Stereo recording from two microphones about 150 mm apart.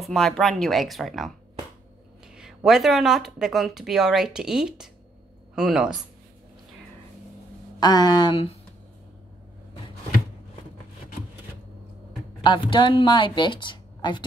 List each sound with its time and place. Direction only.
0.0 s speech: centre (ahead or behind)
2.3 s speech: 5° right (ahead or behind)
7.8 s speech: 25° left (ahead or behind)
12.4 s speech: 35° left (ahead or behind)